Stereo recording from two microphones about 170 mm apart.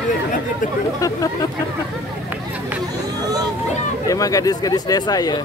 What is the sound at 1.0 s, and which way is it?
Speech, 20° left (ahead or behind).